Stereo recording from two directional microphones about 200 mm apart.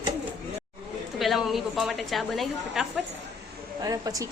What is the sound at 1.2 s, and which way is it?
A woman's voice, centre (ahead or behind).